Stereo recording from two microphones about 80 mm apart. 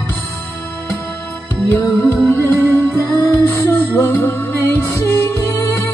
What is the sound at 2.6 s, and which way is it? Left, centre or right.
Music, left.